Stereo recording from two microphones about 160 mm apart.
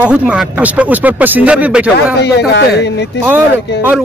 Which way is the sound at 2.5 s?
90° left.